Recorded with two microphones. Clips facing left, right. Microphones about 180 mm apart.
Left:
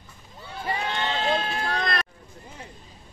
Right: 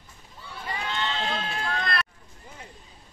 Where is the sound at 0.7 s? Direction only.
45° left (ahead or behind).